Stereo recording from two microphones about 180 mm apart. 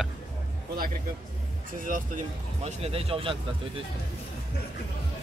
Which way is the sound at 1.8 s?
50° right (ahead or behind).